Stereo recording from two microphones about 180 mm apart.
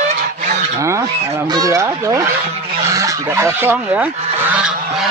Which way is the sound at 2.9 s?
15° right (ahead or behind).